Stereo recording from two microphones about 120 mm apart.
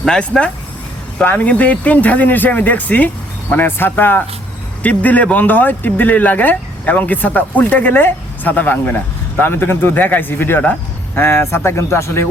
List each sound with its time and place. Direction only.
0.0 s speech: 5° left (ahead or behind)